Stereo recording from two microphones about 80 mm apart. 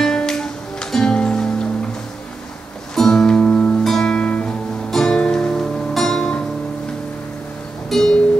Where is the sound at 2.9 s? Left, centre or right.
Centre.